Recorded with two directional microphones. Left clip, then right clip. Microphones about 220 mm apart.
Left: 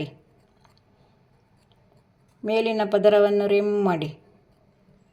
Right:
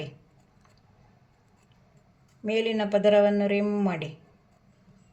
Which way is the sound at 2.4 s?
30° left (ahead or behind).